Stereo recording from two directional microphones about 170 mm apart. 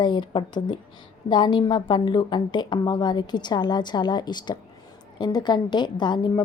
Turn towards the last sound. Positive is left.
turn(degrees=25)  # may be behind; listen again after turning